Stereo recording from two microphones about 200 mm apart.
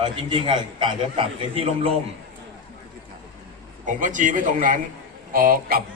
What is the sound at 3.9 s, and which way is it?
Speech, 40° right (ahead or behind).